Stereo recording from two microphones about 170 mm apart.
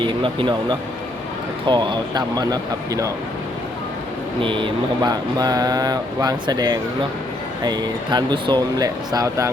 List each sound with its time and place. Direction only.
0.0 s speech: 30° right (ahead or behind)
4.4 s speech: 30° right (ahead or behind)